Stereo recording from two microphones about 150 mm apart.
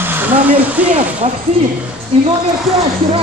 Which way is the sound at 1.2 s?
50° right (ahead or behind).